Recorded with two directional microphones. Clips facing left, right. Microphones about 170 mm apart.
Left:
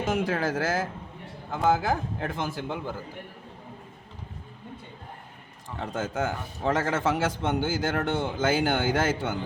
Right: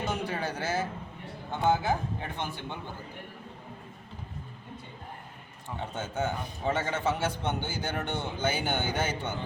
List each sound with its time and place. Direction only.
0.0 s a man's voice: 90° left
5.8 s a man's voice: 90° left